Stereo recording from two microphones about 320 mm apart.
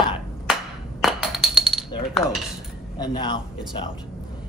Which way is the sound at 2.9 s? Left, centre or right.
Centre.